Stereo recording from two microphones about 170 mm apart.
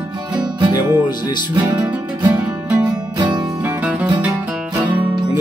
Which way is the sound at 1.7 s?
10° right (ahead or behind).